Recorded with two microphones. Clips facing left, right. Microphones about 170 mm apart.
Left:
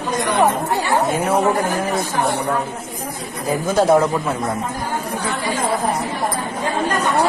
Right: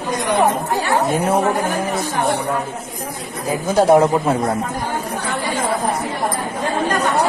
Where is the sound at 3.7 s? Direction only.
15° right (ahead or behind).